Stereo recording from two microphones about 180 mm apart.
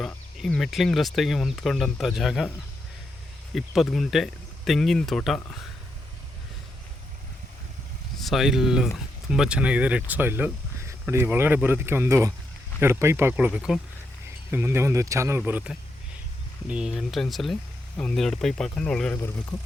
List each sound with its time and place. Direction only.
0.0 s speech: 5° left (ahead or behind)
3.5 s speech: centre (ahead or behind)
8.2 s speech: centre (ahead or behind)
14.5 s speech: 15° right (ahead or behind); by 19.1 s 5° left (ahead or behind)
19.1 s speech: 15° left (ahead or behind)